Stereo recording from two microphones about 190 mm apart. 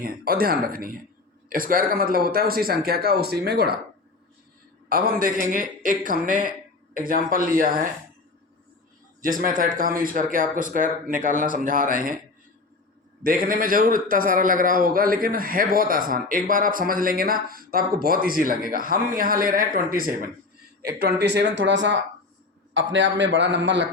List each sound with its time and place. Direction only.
0.0 s a man's voice: 50° right (ahead or behind)
4.9 s a man's voice: 50° right (ahead or behind)
9.2 s a man's voice: 45° right (ahead or behind)
13.2 s a man's voice: 45° right (ahead or behind)
20.8 s a man's voice: 60° right (ahead or behind)